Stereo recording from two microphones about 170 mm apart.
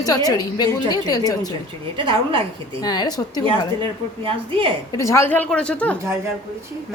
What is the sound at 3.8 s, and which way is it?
Speech, 30° right (ahead or behind).